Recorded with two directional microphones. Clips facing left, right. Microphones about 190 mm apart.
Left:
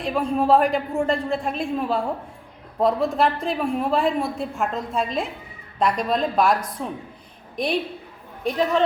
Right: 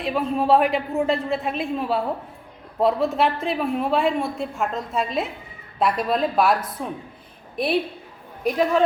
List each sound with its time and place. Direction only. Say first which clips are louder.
0.0 s a man's voice: left 1 dB; centre (ahead or behind)